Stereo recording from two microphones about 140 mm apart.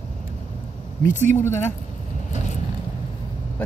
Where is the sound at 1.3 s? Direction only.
15° left (ahead or behind).